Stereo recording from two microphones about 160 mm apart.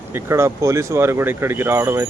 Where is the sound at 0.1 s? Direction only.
15° right (ahead or behind).